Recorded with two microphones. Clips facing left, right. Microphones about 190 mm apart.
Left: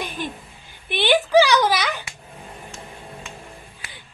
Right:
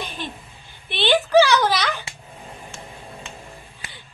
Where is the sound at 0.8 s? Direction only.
15° left (ahead or behind).